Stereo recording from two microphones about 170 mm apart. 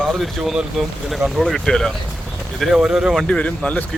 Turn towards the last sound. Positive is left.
turn(degrees=10)  # may be behind; listen again after turning